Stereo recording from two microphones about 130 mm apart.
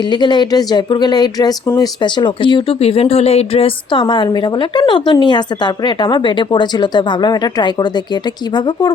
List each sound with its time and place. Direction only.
0.0 s speech: 35° left (ahead or behind)
2.0 s speech: 35° left (ahead or behind)